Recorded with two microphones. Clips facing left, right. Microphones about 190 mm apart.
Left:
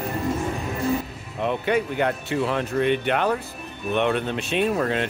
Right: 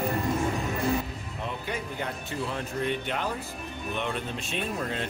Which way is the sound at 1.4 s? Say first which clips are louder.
Left 12 dB; 70° left (ahead or behind).